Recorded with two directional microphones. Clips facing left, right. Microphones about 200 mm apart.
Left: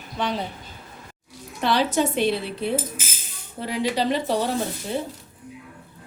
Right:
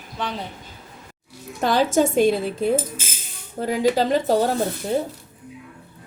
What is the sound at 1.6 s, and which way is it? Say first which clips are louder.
A woman's voice: right 3 dB; 45° right (ahead or behind).